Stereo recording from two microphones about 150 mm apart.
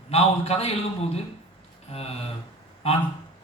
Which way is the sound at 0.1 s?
40° left (ahead or behind).